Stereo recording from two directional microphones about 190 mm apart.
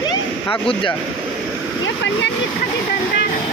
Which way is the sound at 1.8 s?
70° left (ahead or behind).